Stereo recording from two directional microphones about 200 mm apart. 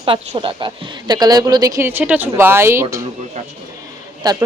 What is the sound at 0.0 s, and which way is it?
Speech, 25° right (ahead or behind).